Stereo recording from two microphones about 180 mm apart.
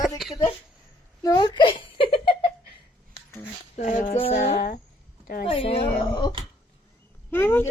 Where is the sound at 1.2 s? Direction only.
20° left (ahead or behind).